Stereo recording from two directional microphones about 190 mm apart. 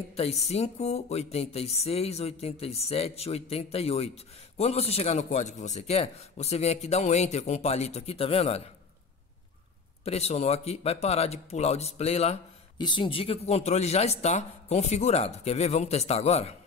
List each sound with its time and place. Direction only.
0.1 s speech: 35° left (ahead or behind)
10.0 s speech: 35° left (ahead or behind)